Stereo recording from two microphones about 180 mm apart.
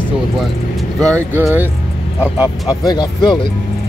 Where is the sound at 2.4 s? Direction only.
20° left (ahead or behind).